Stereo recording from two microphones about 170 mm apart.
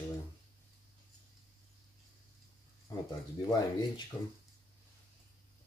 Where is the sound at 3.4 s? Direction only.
25° left (ahead or behind).